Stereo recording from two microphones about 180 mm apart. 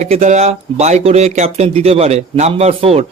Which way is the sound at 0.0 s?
40° right (ahead or behind).